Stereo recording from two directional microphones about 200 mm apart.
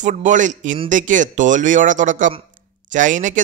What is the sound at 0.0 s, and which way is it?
Speech, 40° right (ahead or behind).